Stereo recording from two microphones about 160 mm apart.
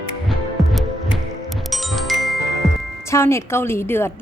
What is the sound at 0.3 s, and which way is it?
Music, centre (ahead or behind).